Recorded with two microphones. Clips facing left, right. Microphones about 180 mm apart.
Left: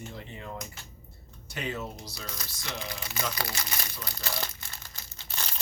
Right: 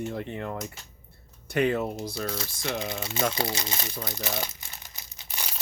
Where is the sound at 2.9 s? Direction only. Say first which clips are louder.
Right 6 dB; 25° right (ahead or behind).